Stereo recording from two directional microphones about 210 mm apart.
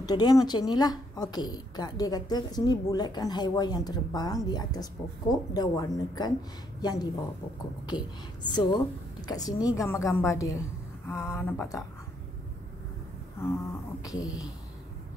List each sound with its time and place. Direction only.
0.0 s a woman's voice: 20° left (ahead or behind)
14.0 s a woman's voice: 15° left (ahead or behind)